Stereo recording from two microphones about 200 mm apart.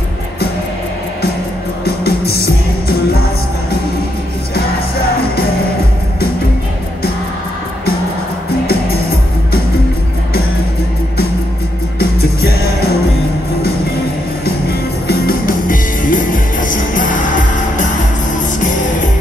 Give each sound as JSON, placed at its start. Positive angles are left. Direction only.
{"t": 2.0, "sound": "music", "side_deg": 50}
{"t": 12.0, "sound": "music", "side_deg": 50}
{"t": 15.0, "sound": "music", "side_deg": 45}